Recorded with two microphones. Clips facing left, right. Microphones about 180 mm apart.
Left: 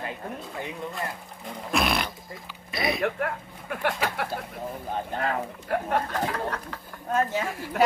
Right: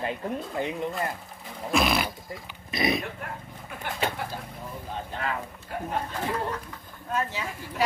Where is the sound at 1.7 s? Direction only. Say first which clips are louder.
Right 1 dB; centre (ahead or behind).